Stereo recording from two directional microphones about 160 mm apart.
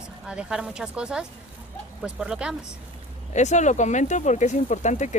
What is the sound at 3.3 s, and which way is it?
Speech, 45° left (ahead or behind).